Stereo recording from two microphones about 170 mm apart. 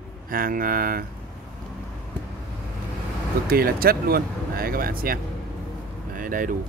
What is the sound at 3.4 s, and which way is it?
Speech, 60° right (ahead or behind).